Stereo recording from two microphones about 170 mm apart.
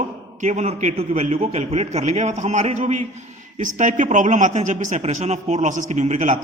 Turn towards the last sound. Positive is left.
turn(degrees=-45)  # may be behind; listen again after turning